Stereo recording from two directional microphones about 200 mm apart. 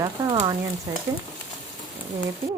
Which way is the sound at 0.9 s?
15° right (ahead or behind).